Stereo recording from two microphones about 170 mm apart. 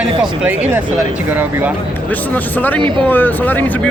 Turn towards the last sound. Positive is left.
turn(degrees=10)  # may be behind; listen again after turning